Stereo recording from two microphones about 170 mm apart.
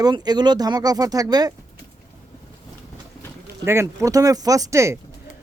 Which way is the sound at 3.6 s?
15° right (ahead or behind).